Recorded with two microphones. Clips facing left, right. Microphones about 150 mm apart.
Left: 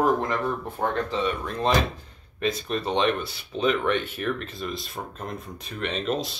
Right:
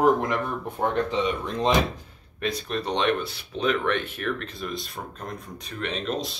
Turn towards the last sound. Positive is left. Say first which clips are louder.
# left 2 dB
turn(degrees=0)  # may be behind; listen again after turning